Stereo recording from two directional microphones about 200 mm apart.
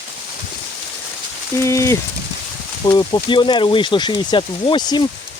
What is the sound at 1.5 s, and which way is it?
Speech, 15° left (ahead or behind).